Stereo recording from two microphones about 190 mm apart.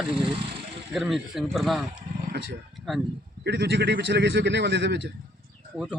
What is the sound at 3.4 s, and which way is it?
A man's voice, 60° right (ahead or behind).